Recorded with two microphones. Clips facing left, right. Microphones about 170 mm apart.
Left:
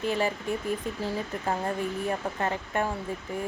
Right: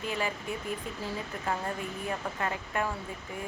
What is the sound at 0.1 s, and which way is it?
Speech, 30° left (ahead or behind).